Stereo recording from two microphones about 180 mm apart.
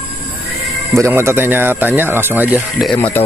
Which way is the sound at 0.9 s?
15° right (ahead or behind).